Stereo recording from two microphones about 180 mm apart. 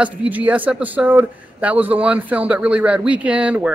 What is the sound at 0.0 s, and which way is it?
A woman's voice, 10° right (ahead or behind).